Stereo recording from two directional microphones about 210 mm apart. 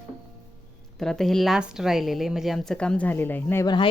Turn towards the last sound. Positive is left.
turn(degrees=15)  # may be behind; listen again after turning